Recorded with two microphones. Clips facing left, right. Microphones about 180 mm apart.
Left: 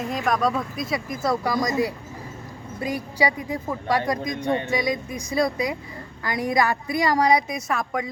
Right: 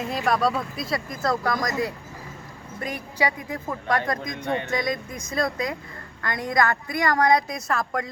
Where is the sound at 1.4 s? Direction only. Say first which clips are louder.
Left 2 dB; 20° left (ahead or behind).